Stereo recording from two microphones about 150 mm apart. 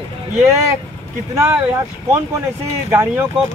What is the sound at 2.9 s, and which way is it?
Speech, 15° right (ahead or behind).